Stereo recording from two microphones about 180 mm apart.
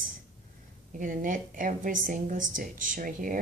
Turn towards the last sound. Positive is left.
turn(degrees=-50)  # may be behind; listen again after turning